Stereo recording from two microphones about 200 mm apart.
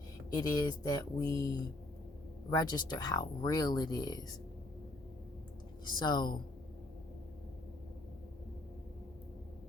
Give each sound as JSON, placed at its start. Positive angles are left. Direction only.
{"t": 0.3, "sound": "speech", "side_deg": 20}
{"t": 5.8, "sound": "speech", "side_deg": 20}